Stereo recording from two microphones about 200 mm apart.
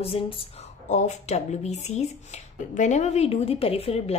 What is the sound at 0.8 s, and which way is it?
Speech, 35° left (ahead or behind).